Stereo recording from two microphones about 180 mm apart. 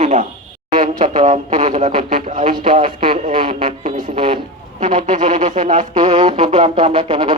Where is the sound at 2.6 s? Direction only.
30° right (ahead or behind).